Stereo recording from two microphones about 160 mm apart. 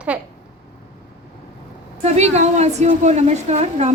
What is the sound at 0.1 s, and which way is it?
Speech, 5° right (ahead or behind).